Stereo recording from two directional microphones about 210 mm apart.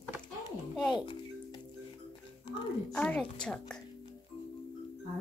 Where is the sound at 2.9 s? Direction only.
5° left (ahead or behind).